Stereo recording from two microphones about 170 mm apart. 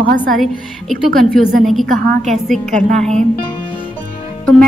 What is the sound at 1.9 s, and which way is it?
Speech, 45° right (ahead or behind).